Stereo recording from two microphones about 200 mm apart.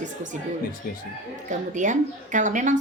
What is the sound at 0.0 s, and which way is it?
Speech, 40° right (ahead or behind).